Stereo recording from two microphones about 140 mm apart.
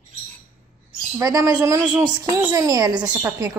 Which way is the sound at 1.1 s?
25° right (ahead or behind).